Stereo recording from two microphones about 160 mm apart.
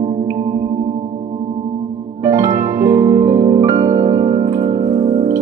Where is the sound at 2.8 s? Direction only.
20° right (ahead or behind).